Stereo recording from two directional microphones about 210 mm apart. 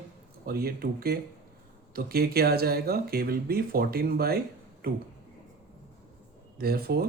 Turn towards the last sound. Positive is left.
turn(degrees=-45)  # may be behind; listen again after turning